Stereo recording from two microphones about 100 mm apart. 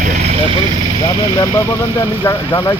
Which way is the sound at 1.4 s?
25° left (ahead or behind).